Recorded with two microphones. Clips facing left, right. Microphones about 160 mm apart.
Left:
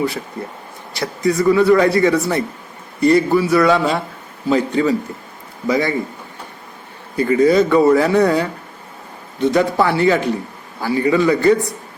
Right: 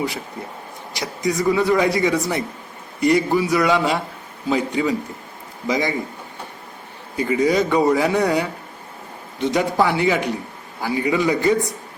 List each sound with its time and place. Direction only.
0.9 s speech: 15° right (ahead or behind)
7.2 s speech: 15° right (ahead or behind)